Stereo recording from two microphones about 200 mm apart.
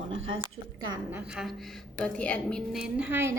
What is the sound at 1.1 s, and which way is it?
A woman's voice, 5° right (ahead or behind).